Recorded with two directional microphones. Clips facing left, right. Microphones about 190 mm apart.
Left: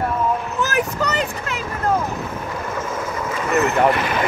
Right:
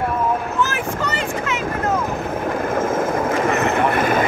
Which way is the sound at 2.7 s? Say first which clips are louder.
Right 7 dB; 50° right (ahead or behind).